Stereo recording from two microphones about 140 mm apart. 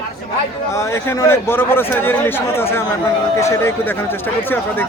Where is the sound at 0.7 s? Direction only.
20° left (ahead or behind).